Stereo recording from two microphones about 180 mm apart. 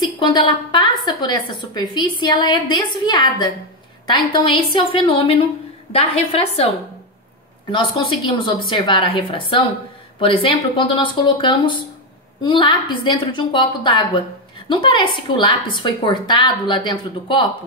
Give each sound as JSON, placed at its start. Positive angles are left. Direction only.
{"t": 0.0, "sound": "a woman's voice", "side_deg": 25}
{"t": 7.7, "sound": "a woman's voice", "side_deg": 25}